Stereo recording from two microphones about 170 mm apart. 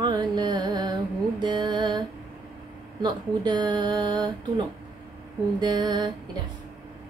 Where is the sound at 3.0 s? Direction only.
25° right (ahead or behind).